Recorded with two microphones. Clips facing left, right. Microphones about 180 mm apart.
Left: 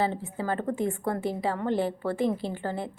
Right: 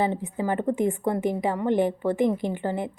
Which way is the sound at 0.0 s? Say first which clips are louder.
Right 3 dB; 15° right (ahead or behind).